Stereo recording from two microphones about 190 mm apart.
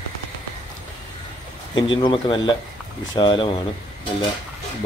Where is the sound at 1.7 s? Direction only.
25° left (ahead or behind).